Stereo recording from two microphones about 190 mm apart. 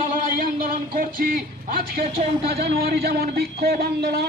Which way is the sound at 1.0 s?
50° right (ahead or behind).